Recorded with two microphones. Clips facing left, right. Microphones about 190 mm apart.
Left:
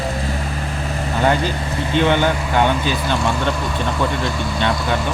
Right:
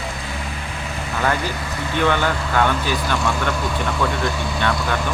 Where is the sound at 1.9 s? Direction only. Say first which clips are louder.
Left 3 dB; 20° left (ahead or behind).